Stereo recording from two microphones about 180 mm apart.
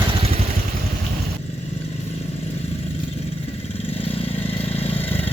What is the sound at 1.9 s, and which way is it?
Vehicle, 35° left (ahead or behind).